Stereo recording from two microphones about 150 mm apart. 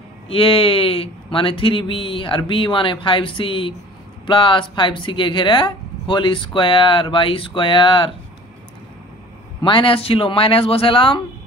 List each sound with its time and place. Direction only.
0.3 s speech: 35° left (ahead or behind)
9.6 s speech: 35° left (ahead or behind)